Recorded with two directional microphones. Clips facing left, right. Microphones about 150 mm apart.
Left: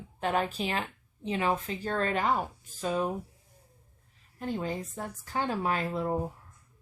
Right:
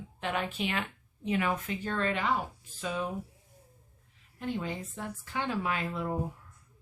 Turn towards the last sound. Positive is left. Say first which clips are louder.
# left 3 dB
turn(degrees=35)  # may be behind; listen again after turning